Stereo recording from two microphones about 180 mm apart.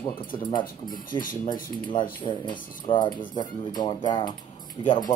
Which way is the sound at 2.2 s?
25° left (ahead or behind).